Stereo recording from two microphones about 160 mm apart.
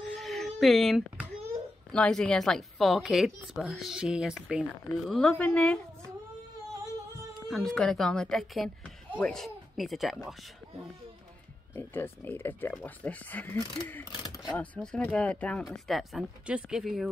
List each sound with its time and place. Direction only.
0.0 s a sound: centre (ahead or behind)
1.9 s speech: 5° left (ahead or behind)
7.4 s a woman's voice: 5° left (ahead or behind)
11.7 s speech: 15° left (ahead or behind)
14.2 s a sound: 25° left (ahead or behind)
14.6 s speech: 5° left (ahead or behind)